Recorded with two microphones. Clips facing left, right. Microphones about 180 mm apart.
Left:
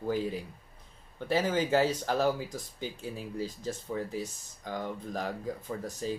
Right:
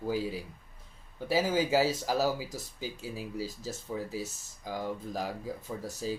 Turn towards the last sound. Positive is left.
turn(degrees=-5)  # may be behind; listen again after turning